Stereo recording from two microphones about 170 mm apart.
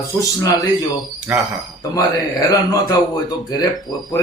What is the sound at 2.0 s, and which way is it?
Speech, 20° left (ahead or behind).